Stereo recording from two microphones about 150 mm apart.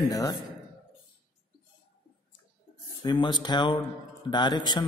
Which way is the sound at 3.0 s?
30° left (ahead or behind).